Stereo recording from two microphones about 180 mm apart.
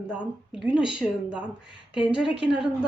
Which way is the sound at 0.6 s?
5° right (ahead or behind).